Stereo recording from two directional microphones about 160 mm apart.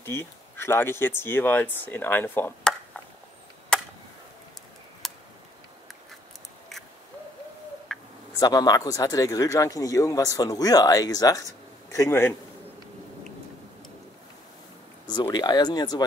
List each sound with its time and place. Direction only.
0.0 s speech: 15° left (ahead or behind)
3.7 s chop: 5° left (ahead or behind)
5.0 s a sound: centre (ahead or behind)
7.9 s a sound: centre (ahead or behind)
8.4 s a man's voice: 25° left (ahead or behind)
15.3 s speech: 25° left (ahead or behind)